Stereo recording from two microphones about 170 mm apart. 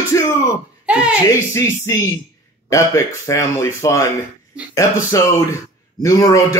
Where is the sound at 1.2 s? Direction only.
15° left (ahead or behind).